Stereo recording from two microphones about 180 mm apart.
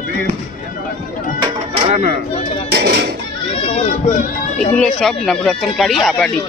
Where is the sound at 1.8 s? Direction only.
40° right (ahead or behind).